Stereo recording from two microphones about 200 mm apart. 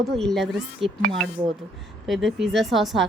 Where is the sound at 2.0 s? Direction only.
Centre (ahead or behind).